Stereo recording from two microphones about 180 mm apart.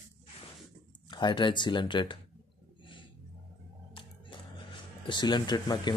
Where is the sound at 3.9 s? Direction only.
25° left (ahead or behind).